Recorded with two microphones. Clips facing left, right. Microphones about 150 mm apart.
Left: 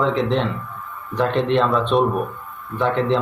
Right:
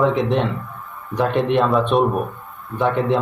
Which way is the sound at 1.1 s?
10° right (ahead or behind).